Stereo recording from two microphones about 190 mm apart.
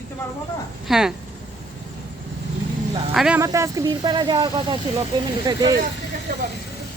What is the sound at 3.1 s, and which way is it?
Speech, 5° right (ahead or behind).